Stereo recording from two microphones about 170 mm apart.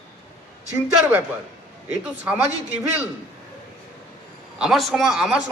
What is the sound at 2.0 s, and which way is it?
Speech, 10° right (ahead or behind).